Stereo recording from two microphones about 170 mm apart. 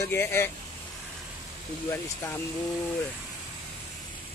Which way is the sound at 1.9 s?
15° left (ahead or behind).